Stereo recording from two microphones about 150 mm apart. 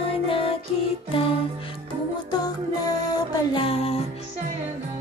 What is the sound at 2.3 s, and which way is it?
Music, 25° left (ahead or behind).